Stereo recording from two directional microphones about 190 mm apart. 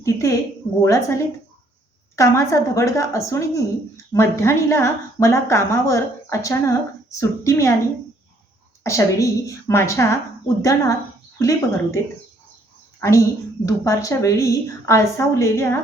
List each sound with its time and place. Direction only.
0.0 s a sound: 15° left (ahead or behind)
0.8 s a woman's voice: 15° left (ahead or behind)
8.8 s a woman's voice: 15° left (ahead or behind)
13.0 s a woman's voice: 15° left (ahead or behind)